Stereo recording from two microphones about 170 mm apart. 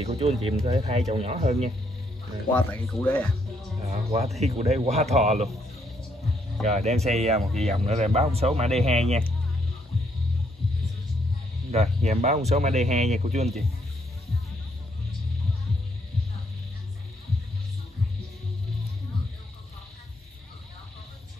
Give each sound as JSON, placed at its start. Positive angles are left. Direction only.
{"t": 0.0, "sound": "speech", "side_deg": -35}
{"t": 2.5, "sound": "speech", "side_deg": 10}
{"t": 4.4, "sound": "speech", "side_deg": -40}
{"t": 6.6, "sound": "speech", "side_deg": -40}
{"t": 11.7, "sound": "speech", "side_deg": -40}